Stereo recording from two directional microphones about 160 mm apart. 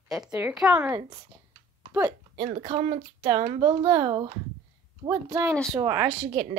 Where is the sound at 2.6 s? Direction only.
35° right (ahead or behind).